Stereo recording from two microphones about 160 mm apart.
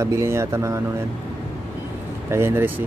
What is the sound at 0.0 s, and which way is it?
Speech, 15° right (ahead or behind).